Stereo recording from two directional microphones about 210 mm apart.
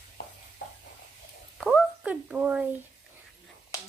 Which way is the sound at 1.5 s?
Centre (ahead or behind).